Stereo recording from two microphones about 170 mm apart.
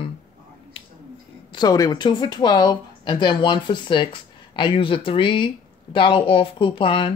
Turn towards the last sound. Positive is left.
turn(degrees=30)  # may be behind; listen again after turning